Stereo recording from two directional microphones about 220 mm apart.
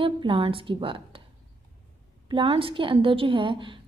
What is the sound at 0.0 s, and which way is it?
A woman's voice, 25° right (ahead or behind).